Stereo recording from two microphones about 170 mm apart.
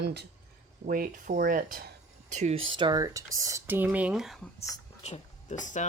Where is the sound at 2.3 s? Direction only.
40° right (ahead or behind); by 4.3 s 5° right (ahead or behind).